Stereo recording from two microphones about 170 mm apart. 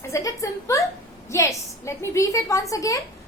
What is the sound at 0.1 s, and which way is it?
A woman's voice, 20° left (ahead or behind).